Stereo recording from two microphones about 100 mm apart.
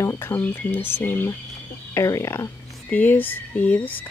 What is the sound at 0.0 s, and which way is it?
Speech, 25° left (ahead or behind).